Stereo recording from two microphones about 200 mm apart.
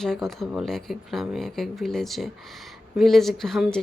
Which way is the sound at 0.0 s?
Centre (ahead or behind).